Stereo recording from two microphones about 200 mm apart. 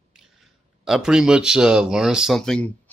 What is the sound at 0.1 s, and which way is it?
Speech, 5° right (ahead or behind).